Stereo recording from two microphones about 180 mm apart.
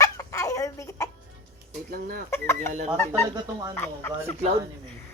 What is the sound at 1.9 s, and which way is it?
Speech, 55° right (ahead or behind).